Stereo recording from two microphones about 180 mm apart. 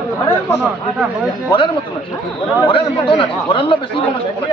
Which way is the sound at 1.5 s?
25° left (ahead or behind).